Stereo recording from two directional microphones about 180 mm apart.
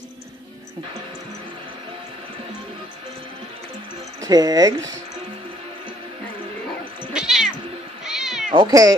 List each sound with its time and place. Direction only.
4.2 s speech: 20° right (ahead or behind)
7.2 s cat: centre (ahead or behind)
8.5 s speech: 20° right (ahead or behind)